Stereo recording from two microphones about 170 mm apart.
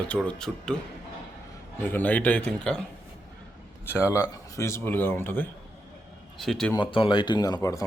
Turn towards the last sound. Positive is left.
turn(degrees=20)  # may be behind; listen again after turning